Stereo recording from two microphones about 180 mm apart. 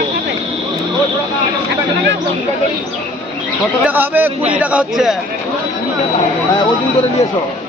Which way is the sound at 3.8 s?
10° right (ahead or behind).